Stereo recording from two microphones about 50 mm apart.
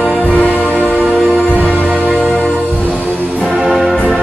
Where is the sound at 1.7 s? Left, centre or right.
Right.